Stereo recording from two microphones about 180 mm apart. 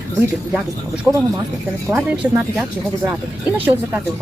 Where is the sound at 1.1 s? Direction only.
10° right (ahead or behind).